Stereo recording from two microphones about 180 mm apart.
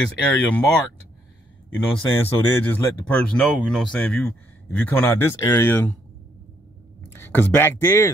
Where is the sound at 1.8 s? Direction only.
10° left (ahead or behind).